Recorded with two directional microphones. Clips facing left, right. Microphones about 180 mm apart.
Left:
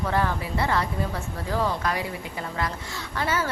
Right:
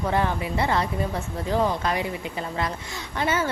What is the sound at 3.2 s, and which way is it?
Speech, 20° right (ahead or behind).